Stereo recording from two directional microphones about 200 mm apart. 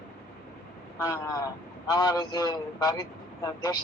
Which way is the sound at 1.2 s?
15° left (ahead or behind).